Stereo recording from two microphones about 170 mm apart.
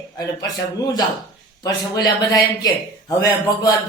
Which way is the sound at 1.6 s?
20° left (ahead or behind).